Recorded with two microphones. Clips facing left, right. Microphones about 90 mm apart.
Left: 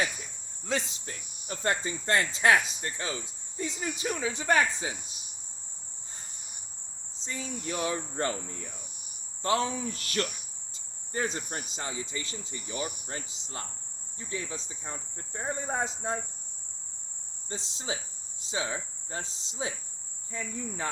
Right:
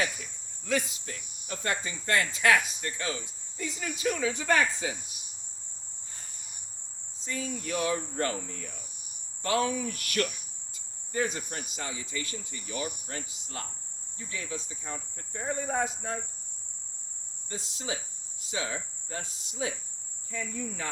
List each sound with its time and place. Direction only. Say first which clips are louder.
0.2 s cricket: even; 25° left (ahead or behind)
3.6 s speech: right 1 dB; 25° left (ahead or behind)
7.2 s speech: right 2 dB; 20° left (ahead or behind)
17.5 s speech: even; 25° left (ahead or behind)